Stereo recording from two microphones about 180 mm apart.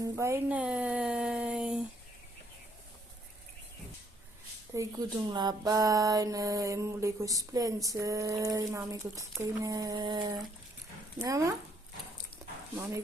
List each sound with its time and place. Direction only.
0.0 s speech: 15° right (ahead or behind)
4.7 s speech: 15° right (ahead or behind)
12.7 s speech: 15° right (ahead or behind)